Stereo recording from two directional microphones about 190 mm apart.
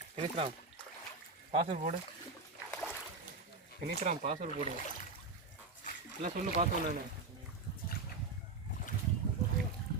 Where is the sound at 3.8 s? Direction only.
45° right (ahead or behind).